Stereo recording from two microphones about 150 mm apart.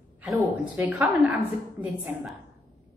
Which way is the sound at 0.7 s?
10° right (ahead or behind).